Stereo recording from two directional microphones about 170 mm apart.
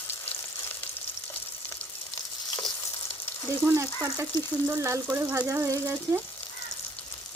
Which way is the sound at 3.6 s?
15° right (ahead or behind).